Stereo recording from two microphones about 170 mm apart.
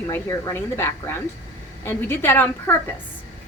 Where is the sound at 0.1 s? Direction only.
15° left (ahead or behind).